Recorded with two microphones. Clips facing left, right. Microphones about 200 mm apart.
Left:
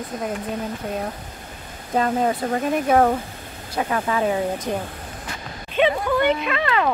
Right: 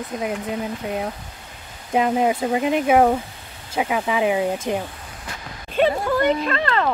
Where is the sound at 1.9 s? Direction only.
10° right (ahead or behind).